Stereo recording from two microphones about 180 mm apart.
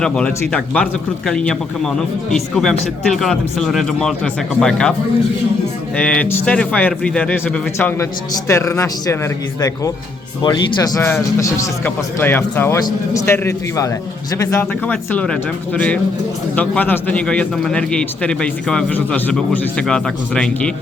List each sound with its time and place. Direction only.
0.0 s a man's voice: 5° left (ahead or behind)
6.0 s a man's voice: 5° left (ahead or behind)